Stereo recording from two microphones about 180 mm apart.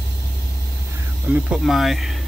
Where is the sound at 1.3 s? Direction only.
5° right (ahead or behind).